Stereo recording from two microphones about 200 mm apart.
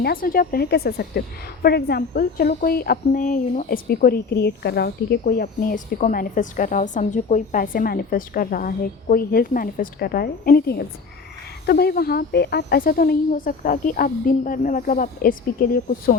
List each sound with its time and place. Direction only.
0.0 s a woman's voice: 45° left (ahead or behind)